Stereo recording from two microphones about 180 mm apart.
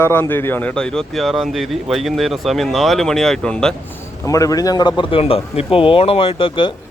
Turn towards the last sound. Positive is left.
turn(degrees=30)  # may be behind; listen again after turning